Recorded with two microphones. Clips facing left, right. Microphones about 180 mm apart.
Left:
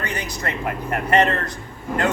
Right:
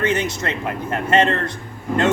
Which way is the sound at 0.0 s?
25° right (ahead or behind).